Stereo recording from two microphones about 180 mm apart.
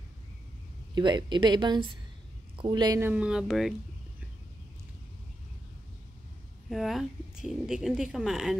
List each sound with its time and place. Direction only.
0.9 s a man's voice: 25° right (ahead or behind)
3.1 s speech: 5° right (ahead or behind)
6.7 s speech: centre (ahead or behind)